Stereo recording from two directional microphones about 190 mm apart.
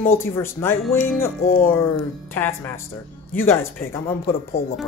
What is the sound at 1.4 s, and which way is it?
Speech, 50° left (ahead or behind).